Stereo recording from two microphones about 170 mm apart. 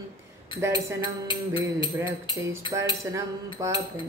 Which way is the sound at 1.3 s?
30° left (ahead or behind).